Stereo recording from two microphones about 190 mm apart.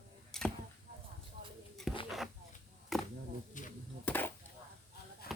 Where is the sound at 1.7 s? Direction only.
Centre (ahead or behind).